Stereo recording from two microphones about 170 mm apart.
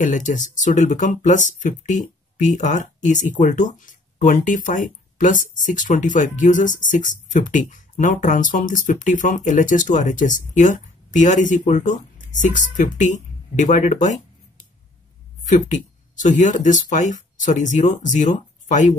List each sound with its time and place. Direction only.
0.0 s speech: 45° left (ahead or behind)
15.4 s speech: 45° left (ahead or behind)